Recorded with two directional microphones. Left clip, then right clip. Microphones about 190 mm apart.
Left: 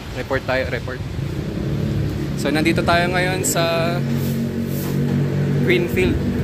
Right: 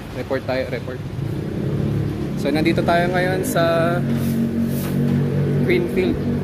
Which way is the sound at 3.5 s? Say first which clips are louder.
Right 3 dB; 40° right (ahead or behind).